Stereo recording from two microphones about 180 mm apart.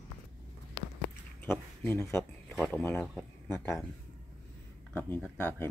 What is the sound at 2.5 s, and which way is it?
Speech, 5° left (ahead or behind).